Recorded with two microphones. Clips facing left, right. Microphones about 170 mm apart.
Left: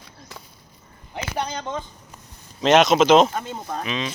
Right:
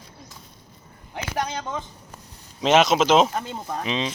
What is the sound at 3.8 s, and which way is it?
Speech, 25° right (ahead or behind).